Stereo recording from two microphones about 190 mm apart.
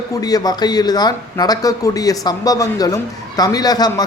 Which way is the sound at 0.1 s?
20° left (ahead or behind).